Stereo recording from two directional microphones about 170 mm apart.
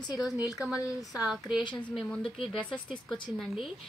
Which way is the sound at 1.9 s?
5° left (ahead or behind).